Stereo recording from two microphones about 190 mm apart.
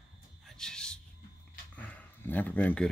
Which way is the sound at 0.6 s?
5° left (ahead or behind).